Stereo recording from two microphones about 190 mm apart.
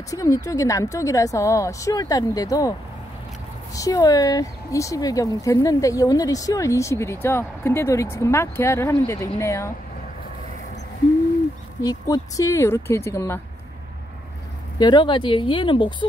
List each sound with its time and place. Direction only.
0.1 s speech: 20° left (ahead or behind)
3.7 s speech: 20° left (ahead or behind)
11.8 s speech: 20° left (ahead or behind)
14.8 s speech: 25° left (ahead or behind)